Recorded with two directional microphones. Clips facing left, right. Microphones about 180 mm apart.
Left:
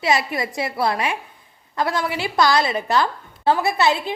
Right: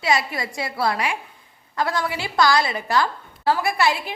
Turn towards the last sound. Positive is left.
turn(degrees=20)  # may be behind; listen again after turning